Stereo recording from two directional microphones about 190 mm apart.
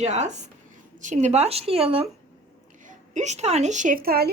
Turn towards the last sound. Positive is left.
turn(degrees=-55)  # may be behind; listen again after turning